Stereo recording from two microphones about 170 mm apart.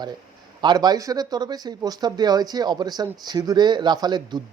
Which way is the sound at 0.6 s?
25° right (ahead or behind).